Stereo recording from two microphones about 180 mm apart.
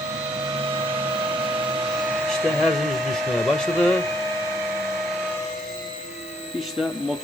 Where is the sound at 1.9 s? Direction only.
10° right (ahead or behind).